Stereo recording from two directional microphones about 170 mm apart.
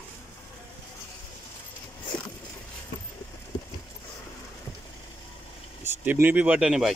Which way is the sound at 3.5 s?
25° left (ahead or behind).